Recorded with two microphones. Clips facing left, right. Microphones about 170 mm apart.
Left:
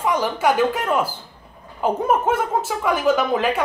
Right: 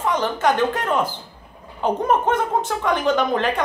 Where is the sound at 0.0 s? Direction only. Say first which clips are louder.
Even; 10° left (ahead or behind).